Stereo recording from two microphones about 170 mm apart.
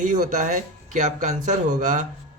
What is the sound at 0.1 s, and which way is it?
A man's voice, 50° right (ahead or behind).